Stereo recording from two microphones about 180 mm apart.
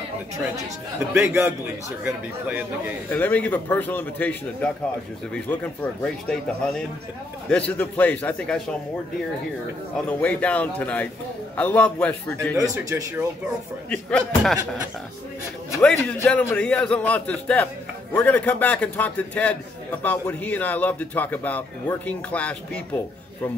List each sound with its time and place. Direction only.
1.1 s a man's voice: 15° right (ahead or behind)
3.1 s a man's voice: 10° left (ahead or behind)
10.0 s a man's voice: 10° left (ahead or behind)
12.5 s a man's voice: 15° right (ahead or behind)
13.8 s speech: 5° left (ahead or behind)
15.8 s a man's voice: 10° left (ahead or behind)